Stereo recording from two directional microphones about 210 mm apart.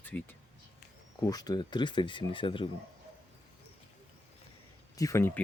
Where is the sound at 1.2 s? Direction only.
20° left (ahead or behind).